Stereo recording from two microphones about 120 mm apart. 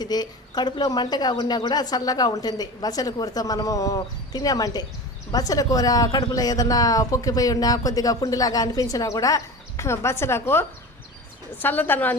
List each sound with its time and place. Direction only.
0.0 s a woman's voice: 35° left (ahead or behind); by 12.1 s 15° left (ahead or behind)